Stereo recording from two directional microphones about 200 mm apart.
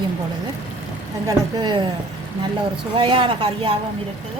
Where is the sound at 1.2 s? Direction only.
20° right (ahead or behind).